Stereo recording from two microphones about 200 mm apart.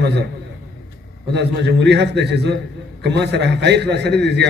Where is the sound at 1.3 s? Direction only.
55° right (ahead or behind).